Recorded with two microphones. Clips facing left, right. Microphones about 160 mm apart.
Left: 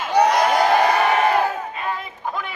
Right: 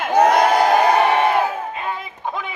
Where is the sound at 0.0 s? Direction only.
50° right (ahead or behind).